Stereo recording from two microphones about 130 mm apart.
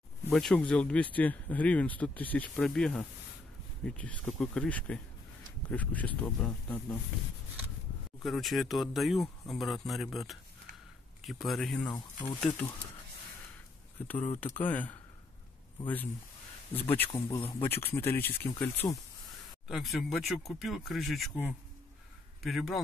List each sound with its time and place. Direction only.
0.3 s speech: 5° left (ahead or behind)
8.2 s speech: centre (ahead or behind)
11.9 s speech: 30° left (ahead or behind)
12.4 s speech: 15° left (ahead or behind)
14.0 s speech: 15° left (ahead or behind)
16.7 s speech: 15° left (ahead or behind)
19.7 s speech: centre (ahead or behind)
22.4 s speech: centre (ahead or behind)